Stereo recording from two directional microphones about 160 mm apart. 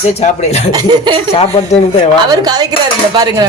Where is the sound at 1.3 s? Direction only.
40° left (ahead or behind).